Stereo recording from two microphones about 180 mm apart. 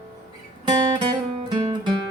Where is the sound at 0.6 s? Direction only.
25° right (ahead or behind).